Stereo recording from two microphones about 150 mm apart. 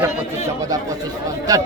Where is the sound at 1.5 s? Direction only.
25° right (ahead or behind).